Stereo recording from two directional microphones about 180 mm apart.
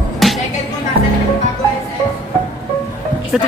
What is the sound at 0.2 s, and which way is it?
Music, centre (ahead or behind).